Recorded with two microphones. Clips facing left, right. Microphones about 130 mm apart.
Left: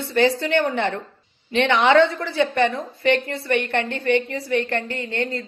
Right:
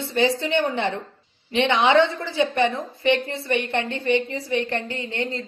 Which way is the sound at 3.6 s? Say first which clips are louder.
Left 1 dB; 55° left (ahead or behind).